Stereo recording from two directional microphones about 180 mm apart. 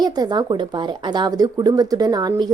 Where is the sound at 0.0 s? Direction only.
25° right (ahead or behind).